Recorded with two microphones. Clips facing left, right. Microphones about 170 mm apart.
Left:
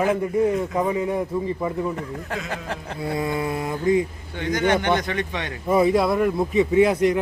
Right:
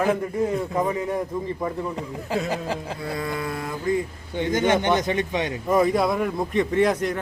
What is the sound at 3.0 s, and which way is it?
A man's voice, 20° left (ahead or behind).